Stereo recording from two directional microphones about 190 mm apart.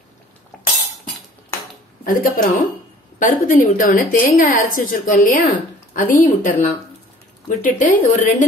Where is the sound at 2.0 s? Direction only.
45° left (ahead or behind).